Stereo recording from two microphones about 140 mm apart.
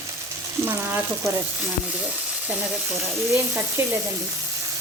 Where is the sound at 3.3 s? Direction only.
20° right (ahead or behind).